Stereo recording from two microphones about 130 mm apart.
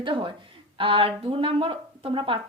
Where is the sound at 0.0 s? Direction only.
40° right (ahead or behind).